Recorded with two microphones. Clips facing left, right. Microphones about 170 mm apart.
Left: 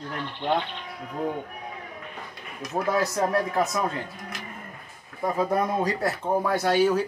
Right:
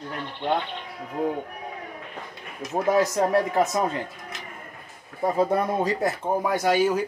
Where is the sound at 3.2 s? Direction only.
20° right (ahead or behind).